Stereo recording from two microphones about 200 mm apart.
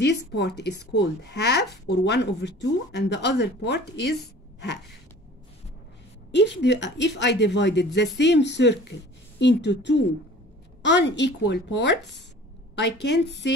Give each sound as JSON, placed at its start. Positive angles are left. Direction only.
{"t": 0.3, "sound": "speech", "side_deg": 55}
{"t": 6.3, "sound": "speech", "side_deg": 60}